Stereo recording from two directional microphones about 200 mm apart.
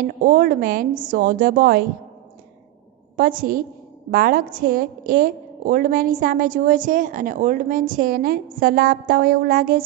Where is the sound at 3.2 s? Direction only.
45° right (ahead or behind).